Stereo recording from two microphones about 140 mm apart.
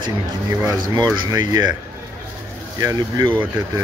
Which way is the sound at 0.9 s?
30° right (ahead or behind).